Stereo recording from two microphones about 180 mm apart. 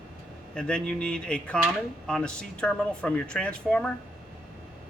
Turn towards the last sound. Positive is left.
turn(degrees=5)  # may be behind; listen again after turning